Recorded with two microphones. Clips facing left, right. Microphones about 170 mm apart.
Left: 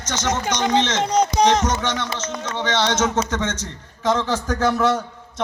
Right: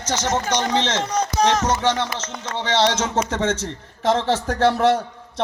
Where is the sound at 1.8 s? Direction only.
30° right (ahead or behind).